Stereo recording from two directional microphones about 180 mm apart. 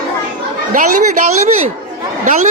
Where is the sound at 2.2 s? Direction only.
45° right (ahead or behind).